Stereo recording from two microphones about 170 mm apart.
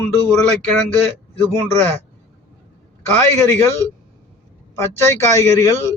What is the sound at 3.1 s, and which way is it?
Speech, 15° left (ahead or behind).